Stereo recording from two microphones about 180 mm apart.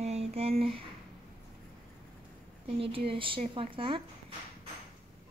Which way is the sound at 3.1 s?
30° right (ahead or behind).